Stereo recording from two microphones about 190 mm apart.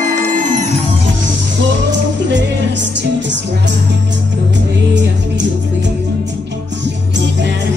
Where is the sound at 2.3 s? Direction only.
70° right (ahead or behind).